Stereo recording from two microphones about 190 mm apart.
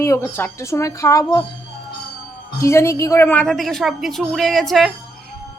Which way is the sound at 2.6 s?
15° left (ahead or behind).